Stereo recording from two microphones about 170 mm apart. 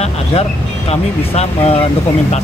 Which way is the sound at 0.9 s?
40° left (ahead or behind).